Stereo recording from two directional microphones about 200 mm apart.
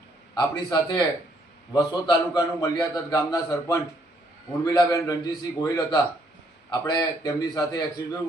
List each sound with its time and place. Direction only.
0.3 s a man's voice: 20° left (ahead or behind)